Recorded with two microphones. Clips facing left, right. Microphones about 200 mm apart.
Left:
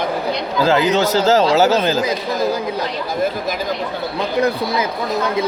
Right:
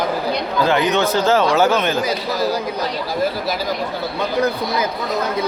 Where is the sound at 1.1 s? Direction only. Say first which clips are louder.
Left 2 dB; 40° left (ahead or behind).